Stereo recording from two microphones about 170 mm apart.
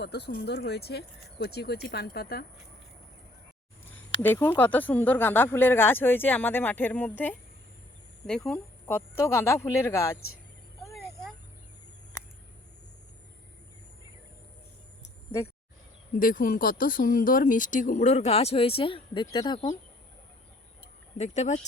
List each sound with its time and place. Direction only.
0.0 s speech: 75° left (ahead or behind)
3.8 s speech: 10° left (ahead or behind)
16.1 s speech: 55° left (ahead or behind); by 19.5 s 25° left (ahead or behind)
21.2 s speech: 45° left (ahead or behind)